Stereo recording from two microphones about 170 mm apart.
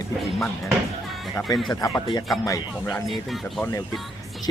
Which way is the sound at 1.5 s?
20° left (ahead or behind).